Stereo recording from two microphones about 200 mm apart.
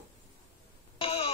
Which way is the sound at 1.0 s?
30° left (ahead or behind).